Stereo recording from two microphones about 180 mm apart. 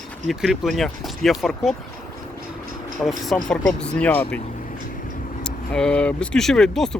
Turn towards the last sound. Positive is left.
turn(degrees=0)  # may be behind; listen again after turning